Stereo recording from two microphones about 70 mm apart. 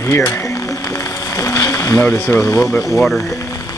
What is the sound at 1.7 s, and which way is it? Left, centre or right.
Boat, left.